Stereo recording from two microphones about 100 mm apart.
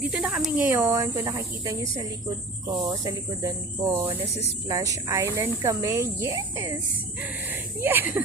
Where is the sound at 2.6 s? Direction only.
45° right (ahead or behind).